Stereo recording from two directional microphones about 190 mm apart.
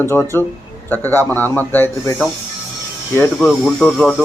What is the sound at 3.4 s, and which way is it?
Speech, centre (ahead or behind).